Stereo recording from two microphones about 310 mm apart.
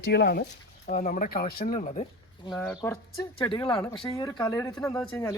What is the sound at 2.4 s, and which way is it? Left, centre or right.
Speech, centre.